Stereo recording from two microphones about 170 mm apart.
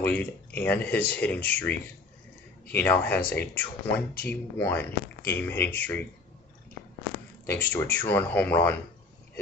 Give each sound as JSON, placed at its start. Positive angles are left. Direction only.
{"t": 0.0, "sound": "speech", "side_deg": 10}
{"t": 2.8, "sound": "speech", "side_deg": 10}
{"t": 7.4, "sound": "speech", "side_deg": 10}